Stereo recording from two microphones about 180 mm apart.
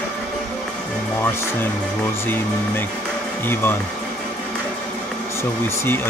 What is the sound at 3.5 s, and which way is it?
Speech, 10° left (ahead or behind).